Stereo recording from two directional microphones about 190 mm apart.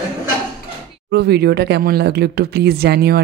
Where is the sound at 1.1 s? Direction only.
60° right (ahead or behind).